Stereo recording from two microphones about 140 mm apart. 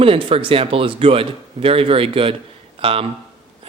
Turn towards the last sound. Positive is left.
turn(degrees=-45)  # may be behind; listen again after turning